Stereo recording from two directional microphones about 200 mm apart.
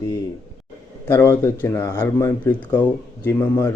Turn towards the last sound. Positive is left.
turn(degrees=10)  # may be behind; listen again after turning